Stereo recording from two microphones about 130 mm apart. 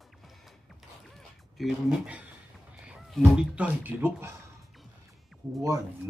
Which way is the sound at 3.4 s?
10° right (ahead or behind).